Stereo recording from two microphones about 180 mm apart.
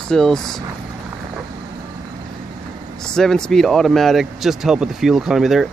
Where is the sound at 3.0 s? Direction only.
5° left (ahead or behind).